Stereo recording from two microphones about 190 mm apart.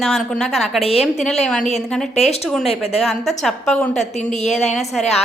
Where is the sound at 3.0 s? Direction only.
Centre (ahead or behind).